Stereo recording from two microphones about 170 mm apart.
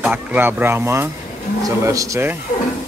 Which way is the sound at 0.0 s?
10° right (ahead or behind).